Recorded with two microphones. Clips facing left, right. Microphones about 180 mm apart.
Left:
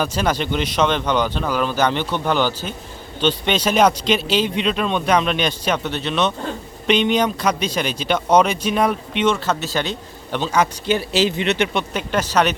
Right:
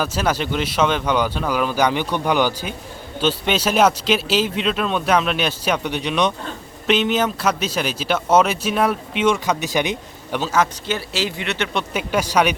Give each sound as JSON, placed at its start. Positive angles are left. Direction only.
{"t": 0.0, "sound": "a man's voice", "side_deg": -5}
{"t": 10.3, "sound": "a man's voice", "side_deg": -5}
{"t": 10.8, "sound": "speech", "side_deg": 20}
{"t": 11.7, "sound": "a man's voice", "side_deg": 0}
{"t": 12.1, "sound": "speech", "side_deg": -10}